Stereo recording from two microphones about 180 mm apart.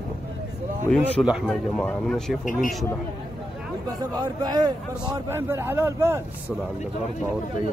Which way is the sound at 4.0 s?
20° right (ahead or behind).